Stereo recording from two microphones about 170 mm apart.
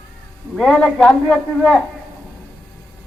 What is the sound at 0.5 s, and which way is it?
A man's voice, centre (ahead or behind).